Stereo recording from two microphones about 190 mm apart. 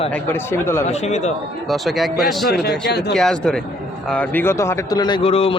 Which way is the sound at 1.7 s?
Centre (ahead or behind).